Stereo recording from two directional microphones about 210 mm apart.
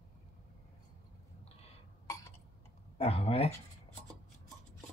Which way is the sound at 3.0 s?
30° left (ahead or behind).